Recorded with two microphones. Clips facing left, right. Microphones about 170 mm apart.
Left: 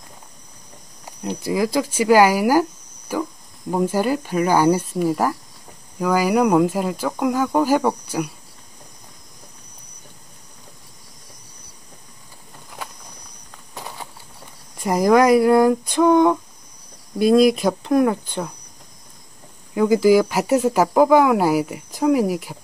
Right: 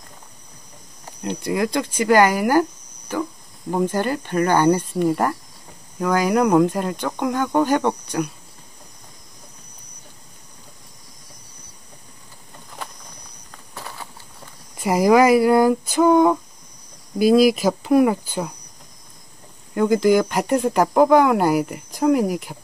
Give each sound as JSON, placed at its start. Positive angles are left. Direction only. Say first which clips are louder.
{"t": 1.2, "sound": "speech", "louder": "left 1 dB", "side_deg": 0}
{"t": 13.7, "sound": "a sound", "louder": "left 1 dB", "side_deg": 15}
{"t": 14.8, "sound": "speech", "louder": "even", "side_deg": -5}
{"t": 19.7, "sound": "speech", "louder": "left 2 dB", "side_deg": 5}